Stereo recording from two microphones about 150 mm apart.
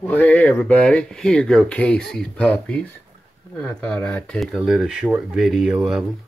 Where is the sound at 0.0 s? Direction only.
10° left (ahead or behind); by 6.0 s 5° right (ahead or behind).